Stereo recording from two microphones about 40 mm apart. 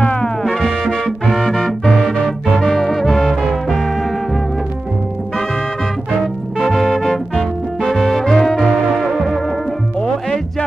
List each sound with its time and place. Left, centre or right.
0.0 s music: left
0.4 s music: centre
6.6 s music: centre
7.0 s music: centre
7.9 s brass instrument: centre
9.9 s music: centre